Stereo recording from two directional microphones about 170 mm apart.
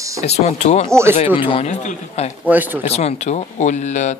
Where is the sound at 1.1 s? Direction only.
35° left (ahead or behind).